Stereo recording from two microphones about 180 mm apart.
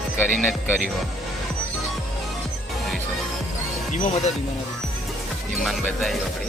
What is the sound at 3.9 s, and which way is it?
Speech, 45° left (ahead or behind).